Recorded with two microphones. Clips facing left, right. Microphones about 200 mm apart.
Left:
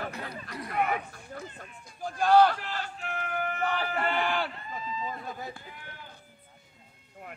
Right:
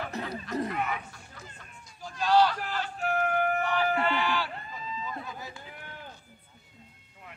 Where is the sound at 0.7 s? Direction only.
50° left (ahead or behind).